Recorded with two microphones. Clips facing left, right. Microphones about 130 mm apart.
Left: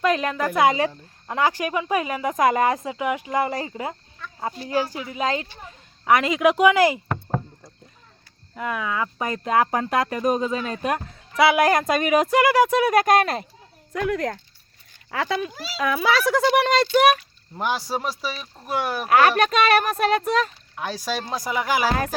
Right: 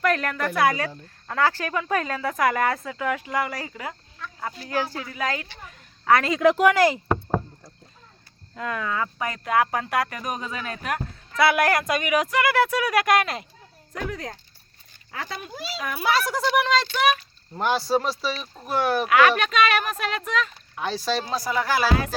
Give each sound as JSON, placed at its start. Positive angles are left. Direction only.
{"t": 0.0, "sound": "speech", "side_deg": 20}
{"t": 8.5, "sound": "speech", "side_deg": 10}
{"t": 9.1, "sound": "speech", "side_deg": 25}
{"t": 11.8, "sound": "speech", "side_deg": 40}
{"t": 12.1, "sound": "speech", "side_deg": 25}
{"t": 13.9, "sound": "speech", "side_deg": 65}
{"t": 15.1, "sound": "a child's voice", "side_deg": 90}
{"t": 15.5, "sound": "a child's voice", "side_deg": 0}
{"t": 15.8, "sound": "a child's voice", "side_deg": 90}
{"t": 16.5, "sound": "speech", "side_deg": 55}
{"t": 17.6, "sound": "speech", "side_deg": 10}
{"t": 19.0, "sound": "speech", "side_deg": 40}
{"t": 20.7, "sound": "speech", "side_deg": 10}